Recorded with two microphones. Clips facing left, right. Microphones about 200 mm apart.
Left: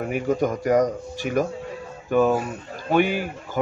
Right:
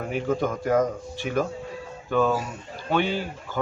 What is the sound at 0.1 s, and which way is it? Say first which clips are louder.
A man's voice: left 2 dB; 15° left (ahead or behind).